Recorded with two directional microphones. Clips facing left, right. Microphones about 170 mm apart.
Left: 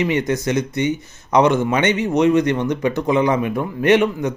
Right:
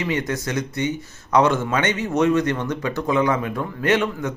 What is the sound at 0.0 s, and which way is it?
Speech, 20° left (ahead or behind).